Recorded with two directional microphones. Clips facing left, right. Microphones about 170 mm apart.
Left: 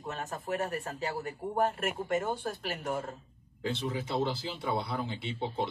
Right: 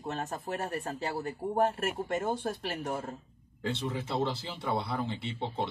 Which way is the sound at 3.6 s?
Centre (ahead or behind).